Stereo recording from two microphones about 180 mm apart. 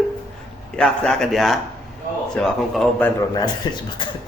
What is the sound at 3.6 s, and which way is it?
Speech, 25° left (ahead or behind).